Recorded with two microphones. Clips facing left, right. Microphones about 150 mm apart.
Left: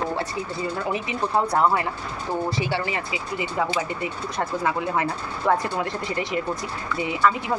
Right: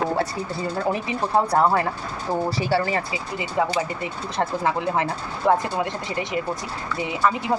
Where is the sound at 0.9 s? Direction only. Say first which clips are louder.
Right 3 dB; 35° right (ahead or behind).